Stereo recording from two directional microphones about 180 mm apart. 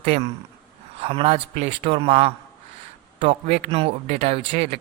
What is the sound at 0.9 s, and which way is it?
Speech, 35° right (ahead or behind).